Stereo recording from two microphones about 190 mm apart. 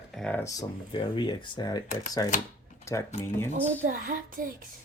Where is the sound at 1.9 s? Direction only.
40° left (ahead or behind).